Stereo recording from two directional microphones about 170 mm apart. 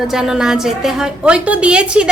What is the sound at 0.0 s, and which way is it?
A woman's voice, 5° right (ahead or behind).